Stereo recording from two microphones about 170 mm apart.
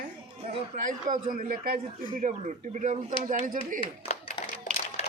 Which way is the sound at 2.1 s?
45° right (ahead or behind).